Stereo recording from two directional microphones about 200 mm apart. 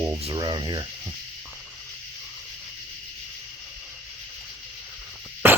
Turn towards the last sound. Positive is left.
turn(degrees=-10)  # may be behind; listen again after turning